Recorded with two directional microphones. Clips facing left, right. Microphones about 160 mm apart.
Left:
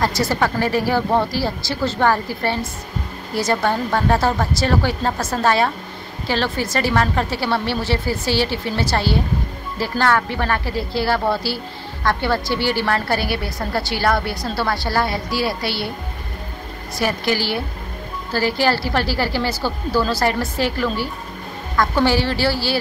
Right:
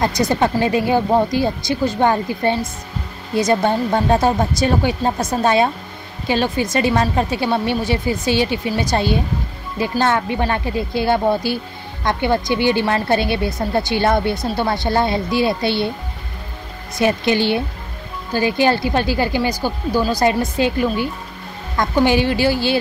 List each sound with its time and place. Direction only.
0.0 s speech: 20° right (ahead or behind)
17.0 s a woman's voice: 20° right (ahead or behind)